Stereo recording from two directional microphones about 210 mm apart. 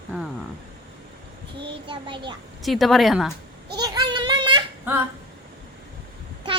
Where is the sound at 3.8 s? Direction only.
20° right (ahead or behind).